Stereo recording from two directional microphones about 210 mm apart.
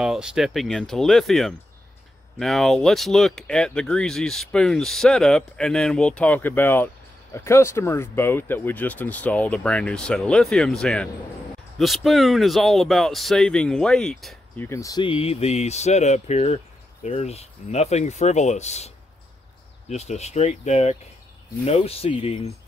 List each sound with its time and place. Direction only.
0.0 s speech: 5° right (ahead or behind)
14.7 s speech: 15° left (ahead or behind); by 18.9 s 30° left (ahead or behind)
19.9 s speech: 30° left (ahead or behind)